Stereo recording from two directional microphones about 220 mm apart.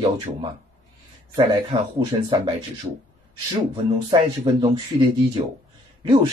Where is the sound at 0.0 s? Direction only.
30° right (ahead or behind).